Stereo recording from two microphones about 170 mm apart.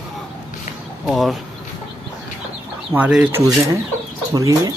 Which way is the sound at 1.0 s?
Centre (ahead or behind).